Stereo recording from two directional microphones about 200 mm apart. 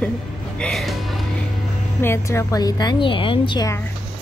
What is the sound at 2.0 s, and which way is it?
A woman's voice, 15° left (ahead or behind).